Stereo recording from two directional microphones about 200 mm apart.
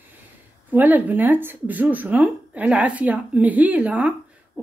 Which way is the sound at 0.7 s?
10° right (ahead or behind).